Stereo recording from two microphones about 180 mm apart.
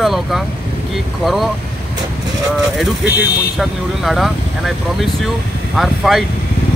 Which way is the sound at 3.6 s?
Centre (ahead or behind).